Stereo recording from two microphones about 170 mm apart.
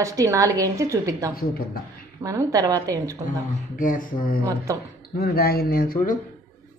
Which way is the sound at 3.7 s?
55° left (ahead or behind).